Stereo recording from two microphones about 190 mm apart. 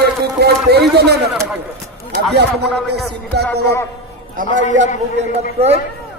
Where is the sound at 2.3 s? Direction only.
60° right (ahead or behind).